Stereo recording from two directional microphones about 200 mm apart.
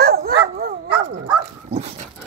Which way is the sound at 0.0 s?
50° right (ahead or behind).